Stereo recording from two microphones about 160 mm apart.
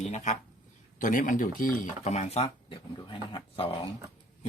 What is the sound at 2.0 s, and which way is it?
Speech, 45° left (ahead or behind).